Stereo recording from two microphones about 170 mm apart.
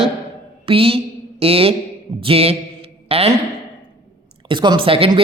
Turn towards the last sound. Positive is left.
turn(degrees=-30)  # may be behind; listen again after turning